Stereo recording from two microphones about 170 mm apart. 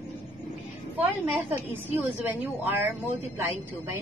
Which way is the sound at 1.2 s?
10° right (ahead or behind).